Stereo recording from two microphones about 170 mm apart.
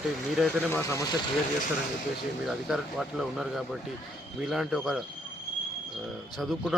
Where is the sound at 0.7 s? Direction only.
15° left (ahead or behind).